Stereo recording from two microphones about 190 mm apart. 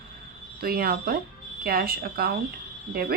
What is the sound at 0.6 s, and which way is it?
A woman's voice, 50° right (ahead or behind).